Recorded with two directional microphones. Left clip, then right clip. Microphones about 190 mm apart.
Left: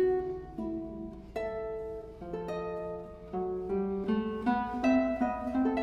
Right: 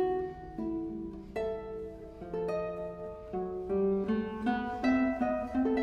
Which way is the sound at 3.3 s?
25° left (ahead or behind).